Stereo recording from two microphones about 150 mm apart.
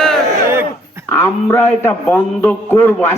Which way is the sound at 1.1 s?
15° left (ahead or behind).